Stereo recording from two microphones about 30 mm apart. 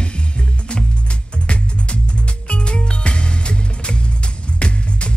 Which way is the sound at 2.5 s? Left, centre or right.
Left.